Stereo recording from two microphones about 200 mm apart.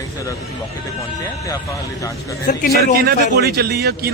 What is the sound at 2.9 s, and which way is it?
A man's voice, 50° right (ahead or behind).